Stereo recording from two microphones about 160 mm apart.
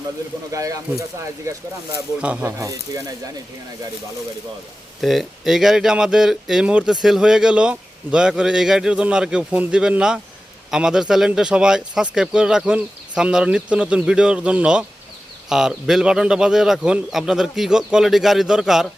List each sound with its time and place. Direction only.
0.5 s speech: 20° right (ahead or behind)
2.2 s speech: 10° right (ahead or behind)
2.5 s speech: 20° right (ahead or behind)
4.9 s speech: centre (ahead or behind)